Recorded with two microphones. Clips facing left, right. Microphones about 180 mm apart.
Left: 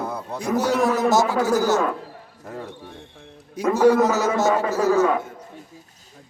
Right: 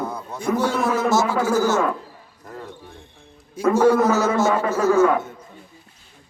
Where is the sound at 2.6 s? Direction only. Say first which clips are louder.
Left 2 dB; 70° left (ahead or behind).